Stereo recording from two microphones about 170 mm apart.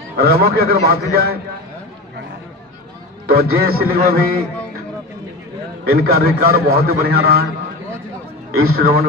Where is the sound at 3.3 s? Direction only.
60° right (ahead or behind).